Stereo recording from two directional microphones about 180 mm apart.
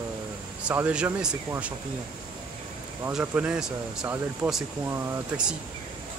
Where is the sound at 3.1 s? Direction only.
5° right (ahead or behind).